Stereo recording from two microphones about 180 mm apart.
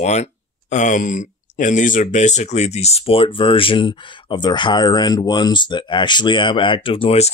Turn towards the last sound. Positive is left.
turn(degrees=30)  # may be behind; listen again after turning